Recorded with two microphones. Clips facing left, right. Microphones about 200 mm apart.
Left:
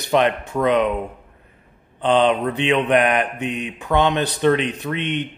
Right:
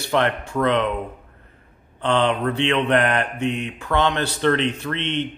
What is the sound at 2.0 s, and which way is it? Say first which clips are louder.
Mantra: left 3 dB; 15° left (ahead or behind).